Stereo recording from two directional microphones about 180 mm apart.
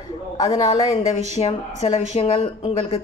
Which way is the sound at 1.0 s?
40° left (ahead or behind).